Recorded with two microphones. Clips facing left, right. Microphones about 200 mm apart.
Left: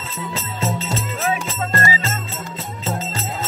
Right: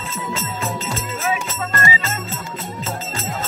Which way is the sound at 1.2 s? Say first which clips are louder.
Even; 35° left (ahead or behind).